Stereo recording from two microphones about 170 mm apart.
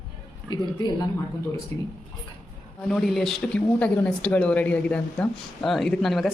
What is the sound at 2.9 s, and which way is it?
Speech, centre (ahead or behind).